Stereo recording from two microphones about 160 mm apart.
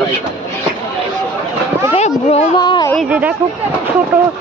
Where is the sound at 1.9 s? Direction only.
40° left (ahead or behind).